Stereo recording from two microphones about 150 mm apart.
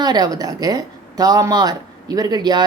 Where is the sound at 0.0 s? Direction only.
25° right (ahead or behind).